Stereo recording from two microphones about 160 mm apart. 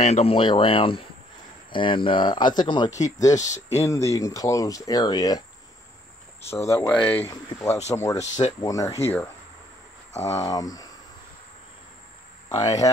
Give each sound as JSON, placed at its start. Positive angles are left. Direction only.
{"t": 0.0, "sound": "speech", "side_deg": 40}
{"t": 6.4, "sound": "speech", "side_deg": 15}
{"t": 7.9, "sound": "speech", "side_deg": 20}
{"t": 10.1, "sound": "speech", "side_deg": 45}
{"t": 10.4, "sound": "speech", "side_deg": 20}
{"t": 12.4, "sound": "speech", "side_deg": 25}